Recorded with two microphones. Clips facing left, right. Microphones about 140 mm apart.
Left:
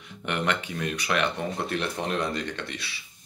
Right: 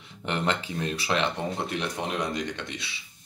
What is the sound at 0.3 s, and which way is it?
Speech, 30° right (ahead or behind).